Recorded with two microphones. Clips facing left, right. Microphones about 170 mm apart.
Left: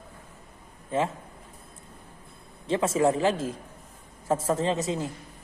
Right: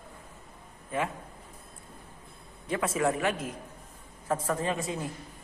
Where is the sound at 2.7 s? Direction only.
25° left (ahead or behind).